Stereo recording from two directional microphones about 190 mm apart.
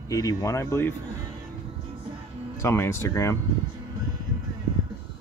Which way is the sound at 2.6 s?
15° left (ahead or behind).